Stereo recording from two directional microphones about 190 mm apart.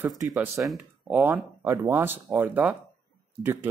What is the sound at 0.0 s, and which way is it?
Speech, 10° right (ahead or behind).